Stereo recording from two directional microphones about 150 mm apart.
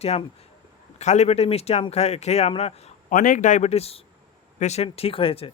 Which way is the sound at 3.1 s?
60° left (ahead or behind).